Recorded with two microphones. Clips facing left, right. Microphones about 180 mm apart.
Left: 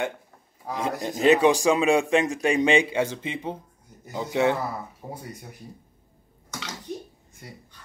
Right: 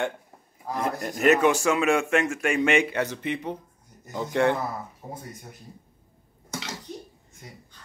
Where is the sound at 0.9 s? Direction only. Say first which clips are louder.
Left 2 dB; 20° left (ahead or behind).